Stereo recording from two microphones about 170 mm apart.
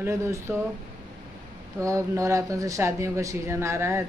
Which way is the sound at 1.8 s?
20° right (ahead or behind).